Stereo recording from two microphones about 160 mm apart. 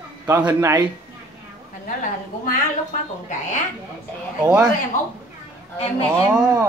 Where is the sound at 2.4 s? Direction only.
55° left (ahead or behind).